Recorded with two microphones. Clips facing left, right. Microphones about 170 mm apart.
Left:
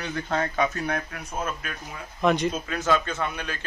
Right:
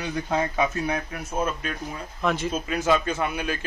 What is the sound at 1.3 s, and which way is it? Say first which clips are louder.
Speech: right 4 dB; 25° right (ahead or behind).